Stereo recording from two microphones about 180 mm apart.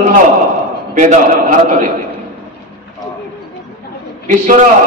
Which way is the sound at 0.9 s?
40° right (ahead or behind).